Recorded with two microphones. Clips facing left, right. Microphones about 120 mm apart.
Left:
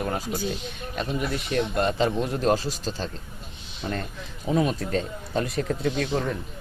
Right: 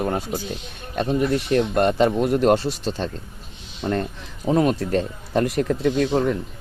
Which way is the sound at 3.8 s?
50° right (ahead or behind).